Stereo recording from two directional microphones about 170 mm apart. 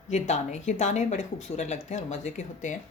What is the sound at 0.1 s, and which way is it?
Speech, 45° left (ahead or behind).